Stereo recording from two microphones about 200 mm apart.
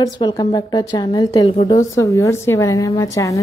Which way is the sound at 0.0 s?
20° left (ahead or behind).